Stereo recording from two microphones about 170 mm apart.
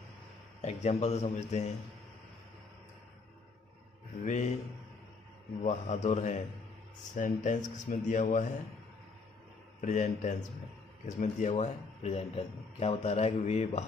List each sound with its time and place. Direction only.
0.6 s speech: 40° left (ahead or behind)
4.2 s speech: 45° left (ahead or behind)
5.6 s speech: 45° left (ahead or behind)
9.8 s speech: 45° left (ahead or behind)